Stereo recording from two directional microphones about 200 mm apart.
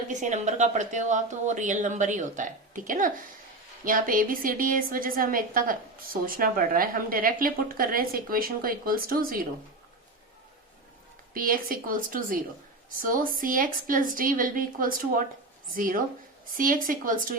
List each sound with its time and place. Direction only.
0.1 s a woman's voice: 35° right (ahead or behind)
11.3 s a woman's voice: 45° right (ahead or behind)